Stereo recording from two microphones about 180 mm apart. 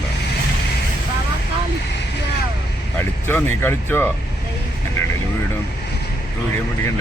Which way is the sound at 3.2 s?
10° left (ahead or behind).